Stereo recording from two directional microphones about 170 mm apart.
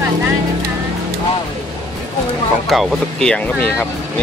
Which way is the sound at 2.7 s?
Centre (ahead or behind).